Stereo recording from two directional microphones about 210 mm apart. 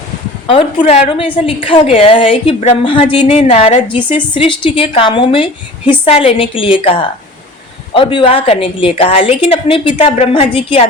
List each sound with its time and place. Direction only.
0.4 s a woman's voice: 25° left (ahead or behind)